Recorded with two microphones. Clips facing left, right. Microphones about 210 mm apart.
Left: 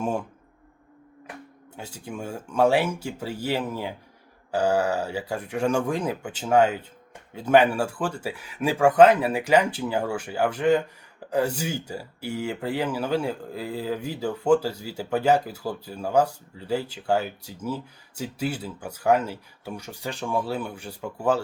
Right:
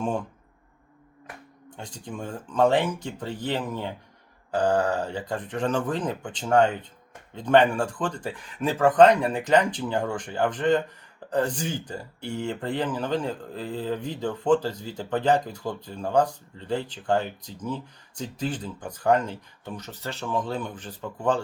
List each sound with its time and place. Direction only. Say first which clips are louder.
0.0 s speech: left 1 dB; 10° left (ahead or behind)
1.7 s speech: left 1 dB; 5° left (ahead or behind)